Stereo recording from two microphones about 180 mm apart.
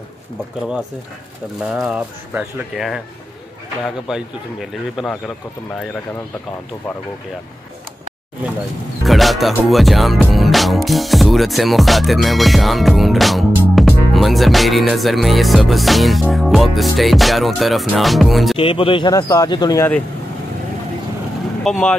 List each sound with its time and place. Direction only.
0.6 s music: 5° right (ahead or behind)
4.1 s music: centre (ahead or behind)
9.0 s music: centre (ahead or behind)
18.6 s speech: 30° left (ahead or behind)
21.6 s music: centre (ahead or behind)